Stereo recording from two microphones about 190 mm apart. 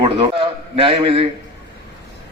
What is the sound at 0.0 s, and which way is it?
A man's voice, 30° right (ahead or behind).